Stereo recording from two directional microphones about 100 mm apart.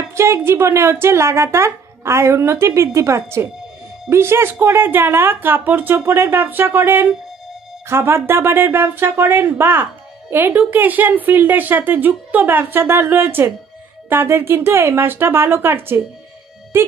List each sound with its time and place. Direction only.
0.1 s speech: 25° right (ahead or behind)